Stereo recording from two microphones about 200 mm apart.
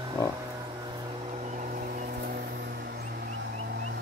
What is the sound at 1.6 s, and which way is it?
Vehicle, 45° right (ahead or behind).